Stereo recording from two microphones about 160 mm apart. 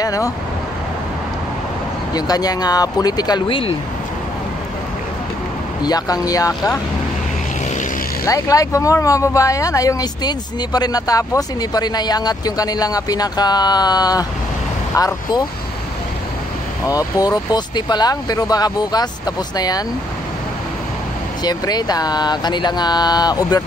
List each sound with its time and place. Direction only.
0.0 s vehicle: 20° left (ahead or behind)
2.1 s speech: 25° left (ahead or behind)
5.8 s speech: 25° left (ahead or behind)
8.3 s speech: 20° left (ahead or behind)
16.8 s speech: 20° left (ahead or behind)
21.5 s speech: 25° left (ahead or behind)